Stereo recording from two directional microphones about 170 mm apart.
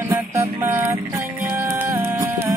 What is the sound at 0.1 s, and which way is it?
Music, 15° right (ahead or behind).